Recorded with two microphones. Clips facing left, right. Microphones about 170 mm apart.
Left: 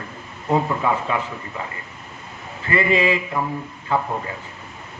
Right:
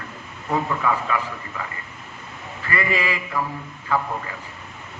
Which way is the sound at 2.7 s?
25° left (ahead or behind).